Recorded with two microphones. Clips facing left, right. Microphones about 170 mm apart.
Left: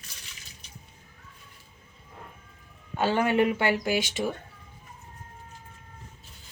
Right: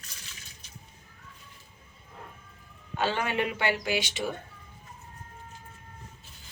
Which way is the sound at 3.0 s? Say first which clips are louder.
Left 5 dB; 45° left (ahead or behind).